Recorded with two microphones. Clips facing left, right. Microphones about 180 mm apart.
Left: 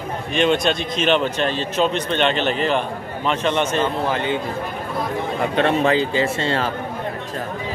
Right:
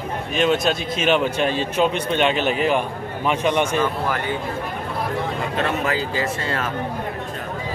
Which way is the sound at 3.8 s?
20° left (ahead or behind).